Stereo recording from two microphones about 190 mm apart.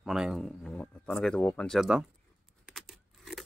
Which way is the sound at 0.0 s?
Centre (ahead or behind).